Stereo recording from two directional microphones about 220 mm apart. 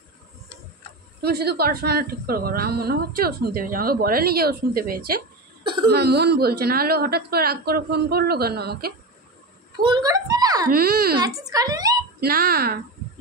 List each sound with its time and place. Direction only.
1.2 s a woman's voice: 45° right (ahead or behind)
5.6 s cough: 20° right (ahead or behind)
5.9 s a woman's voice: 45° right (ahead or behind)
9.7 s a sound: 20° right (ahead or behind)
10.7 s a woman's voice: 45° right (ahead or behind)
11.1 s speech: 15° right (ahead or behind)
12.2 s a woman's voice: 40° right (ahead or behind)